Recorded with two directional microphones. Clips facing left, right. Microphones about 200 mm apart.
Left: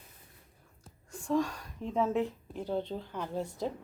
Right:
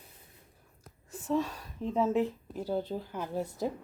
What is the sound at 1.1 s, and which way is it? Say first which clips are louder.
Speech: left 1 dB; 5° right (ahead or behind).